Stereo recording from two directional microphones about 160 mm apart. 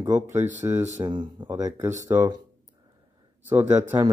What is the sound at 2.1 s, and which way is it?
Speech, 15° right (ahead or behind).